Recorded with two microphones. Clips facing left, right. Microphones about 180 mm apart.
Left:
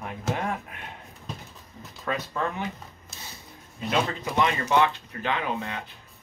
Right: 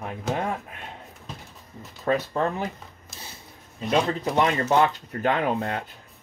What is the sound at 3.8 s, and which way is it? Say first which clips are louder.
Speech: right 4 dB; 35° right (ahead or behind).